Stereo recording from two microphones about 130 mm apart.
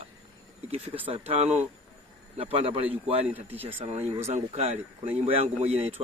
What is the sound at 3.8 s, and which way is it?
Speech, 55° right (ahead or behind).